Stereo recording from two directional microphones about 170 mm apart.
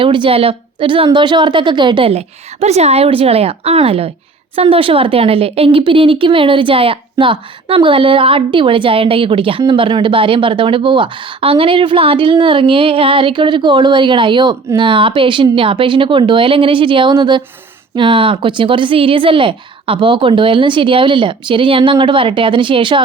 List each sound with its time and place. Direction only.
0.0 s speech: 30° right (ahead or behind)